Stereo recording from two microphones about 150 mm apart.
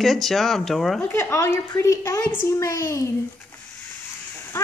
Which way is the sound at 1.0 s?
15° left (ahead or behind).